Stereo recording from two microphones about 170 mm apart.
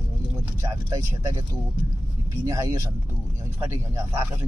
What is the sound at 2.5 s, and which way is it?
Speech, 20° right (ahead or behind).